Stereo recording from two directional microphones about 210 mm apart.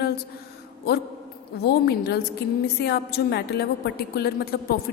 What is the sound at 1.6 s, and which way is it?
A woman's voice, 50° left (ahead or behind).